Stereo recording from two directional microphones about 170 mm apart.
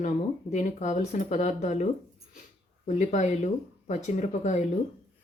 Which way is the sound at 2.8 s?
45° left (ahead or behind).